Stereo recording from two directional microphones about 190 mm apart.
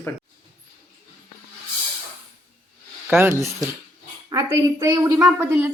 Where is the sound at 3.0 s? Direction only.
5° right (ahead or behind).